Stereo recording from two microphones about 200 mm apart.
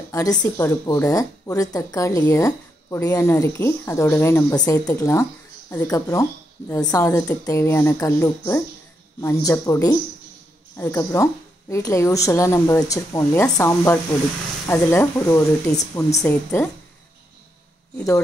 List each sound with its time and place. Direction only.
0.1 s speech: 20° left (ahead or behind)